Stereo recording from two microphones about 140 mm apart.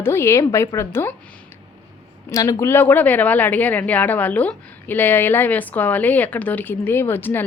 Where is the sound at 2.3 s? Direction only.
25° left (ahead or behind).